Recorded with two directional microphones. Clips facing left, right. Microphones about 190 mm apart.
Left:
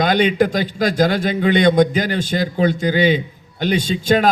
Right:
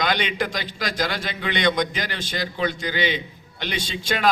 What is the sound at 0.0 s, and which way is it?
A man's voice, 45° left (ahead or behind).